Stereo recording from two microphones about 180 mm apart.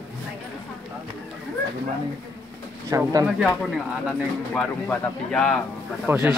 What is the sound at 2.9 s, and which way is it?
Speech, 20° right (ahead or behind).